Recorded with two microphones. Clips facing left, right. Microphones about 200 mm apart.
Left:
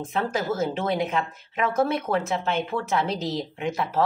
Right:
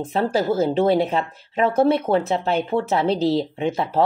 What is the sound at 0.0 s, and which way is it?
Speech, 35° right (ahead or behind).